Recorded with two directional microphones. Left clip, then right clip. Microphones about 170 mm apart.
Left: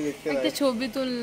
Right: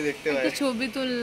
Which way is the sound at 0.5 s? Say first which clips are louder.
Left 2 dB; 40° left (ahead or behind).